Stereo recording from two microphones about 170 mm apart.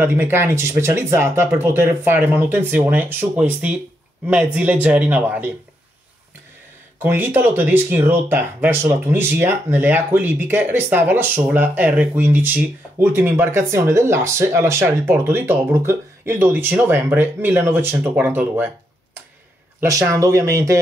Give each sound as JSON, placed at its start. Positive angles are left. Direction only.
{"t": 0.0, "sound": "speech", "side_deg": -15}
{"t": 7.0, "sound": "speech", "side_deg": -10}
{"t": 19.8, "sound": "speech", "side_deg": -20}